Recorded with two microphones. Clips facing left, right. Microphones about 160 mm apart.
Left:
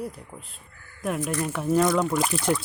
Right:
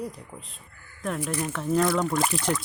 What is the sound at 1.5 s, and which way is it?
Speech, 10° left (ahead or behind).